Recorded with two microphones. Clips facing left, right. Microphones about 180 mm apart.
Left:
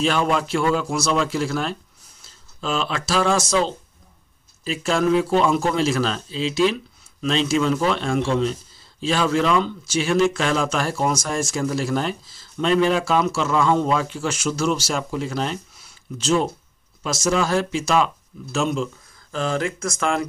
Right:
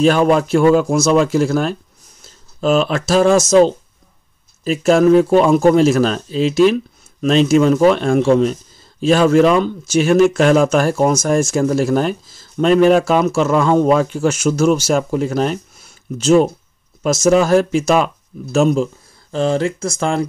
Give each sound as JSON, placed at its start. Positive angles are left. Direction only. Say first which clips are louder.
{"t": 0.0, "sound": "speech", "louder": "right 8 dB", "side_deg": -45}
{"t": 19.3, "sound": "speech", "louder": "right 7 dB", "side_deg": -30}